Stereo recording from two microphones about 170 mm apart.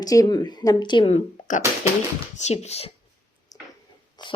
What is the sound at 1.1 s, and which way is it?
Speech, 50° left (ahead or behind).